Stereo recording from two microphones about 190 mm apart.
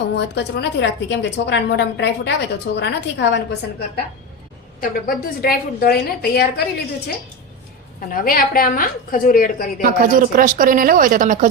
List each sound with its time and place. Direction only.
0.2 s a woman's voice: 60° left (ahead or behind)
4.8 s a woman's voice: 50° left (ahead or behind)
8.1 s a woman's voice: 50° left (ahead or behind)
9.8 s speech: 45° right (ahead or behind)